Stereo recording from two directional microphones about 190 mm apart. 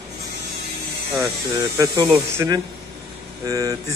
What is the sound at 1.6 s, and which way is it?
Speech, 15° right (ahead or behind).